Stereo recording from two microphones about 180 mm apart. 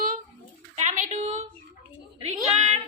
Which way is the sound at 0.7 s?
40° right (ahead or behind).